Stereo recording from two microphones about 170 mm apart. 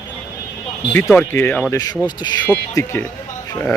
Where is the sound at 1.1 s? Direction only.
10° left (ahead or behind).